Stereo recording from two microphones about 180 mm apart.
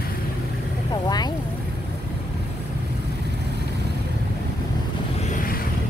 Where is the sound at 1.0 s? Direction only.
25° left (ahead or behind).